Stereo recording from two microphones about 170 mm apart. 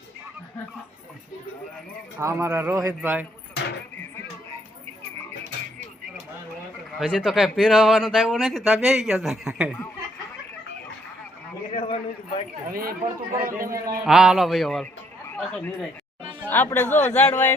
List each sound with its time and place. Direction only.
2.1 s a man's voice: 15° right (ahead or behind)
7.1 s speech: centre (ahead or behind)
11.7 s a man's voice: 30° left (ahead or behind)
12.7 s speech: 60° right (ahead or behind)
13.7 s a man's voice: 20° right (ahead or behind)
14.0 s speech: 5° right (ahead or behind)